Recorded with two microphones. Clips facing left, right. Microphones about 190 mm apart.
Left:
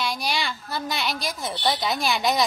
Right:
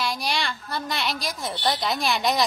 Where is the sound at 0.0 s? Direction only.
Centre (ahead or behind).